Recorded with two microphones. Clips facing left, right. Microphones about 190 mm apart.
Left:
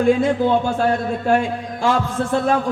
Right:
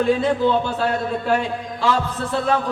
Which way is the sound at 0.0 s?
45° left (ahead or behind).